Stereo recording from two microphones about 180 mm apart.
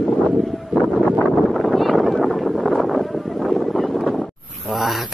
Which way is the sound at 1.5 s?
Centre (ahead or behind).